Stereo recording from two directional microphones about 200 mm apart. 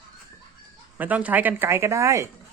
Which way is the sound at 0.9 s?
10° right (ahead or behind).